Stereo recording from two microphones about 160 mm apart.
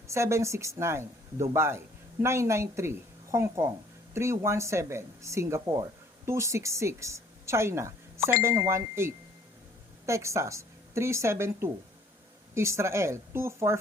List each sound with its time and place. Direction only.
0.1 s a woman's voice: 15° right (ahead or behind)